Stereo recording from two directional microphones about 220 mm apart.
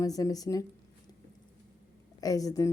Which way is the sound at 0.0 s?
15° left (ahead or behind).